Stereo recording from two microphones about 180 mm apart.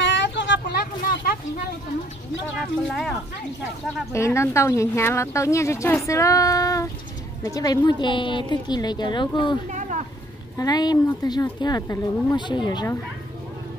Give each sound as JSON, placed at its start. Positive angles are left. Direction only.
{"t": 0.0, "sound": "vehicle", "side_deg": 80}
{"t": 2.5, "sound": "speech", "side_deg": 0}
{"t": 4.1, "sound": "a woman's voice", "side_deg": 15}
{"t": 9.7, "sound": "a sound", "side_deg": -45}
{"t": 10.6, "sound": "a woman's voice", "side_deg": 20}